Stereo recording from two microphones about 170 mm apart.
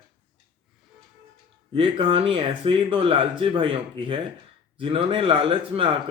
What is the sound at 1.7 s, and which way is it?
Speech, 30° right (ahead or behind).